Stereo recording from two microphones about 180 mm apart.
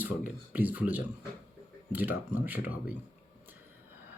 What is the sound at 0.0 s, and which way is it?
Speech, 10° right (ahead or behind).